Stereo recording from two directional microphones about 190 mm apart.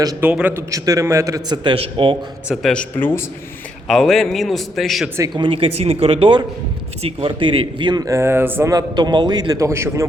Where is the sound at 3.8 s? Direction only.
Centre (ahead or behind).